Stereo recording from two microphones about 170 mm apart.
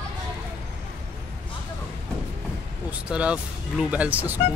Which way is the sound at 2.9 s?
5° right (ahead or behind).